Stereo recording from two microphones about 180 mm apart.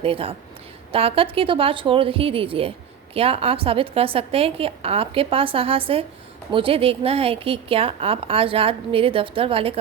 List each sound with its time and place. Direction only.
0.0 s a woman's voice: 30° right (ahead or behind)